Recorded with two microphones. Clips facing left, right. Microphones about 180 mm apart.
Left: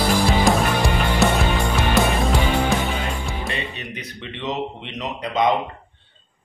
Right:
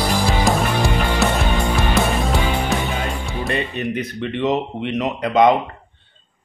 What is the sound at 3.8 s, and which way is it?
Speech, 50° right (ahead or behind).